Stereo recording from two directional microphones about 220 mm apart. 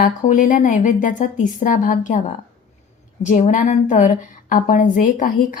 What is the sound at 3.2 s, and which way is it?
A woman's voice, 35° left (ahead or behind).